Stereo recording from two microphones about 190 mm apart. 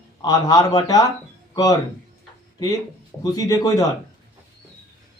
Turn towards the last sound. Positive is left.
turn(degrees=15)  # may be behind; listen again after turning